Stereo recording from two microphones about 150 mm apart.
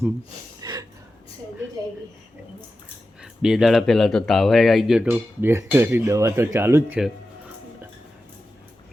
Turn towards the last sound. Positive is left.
turn(degrees=-15)  # may be behind; listen again after turning